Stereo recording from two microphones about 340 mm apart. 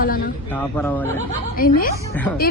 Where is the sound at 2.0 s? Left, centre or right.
Centre.